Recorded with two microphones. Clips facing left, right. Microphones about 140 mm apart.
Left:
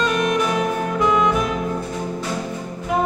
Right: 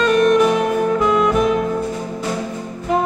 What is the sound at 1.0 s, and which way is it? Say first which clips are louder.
Music: left 1 dB; centre (ahead or behind).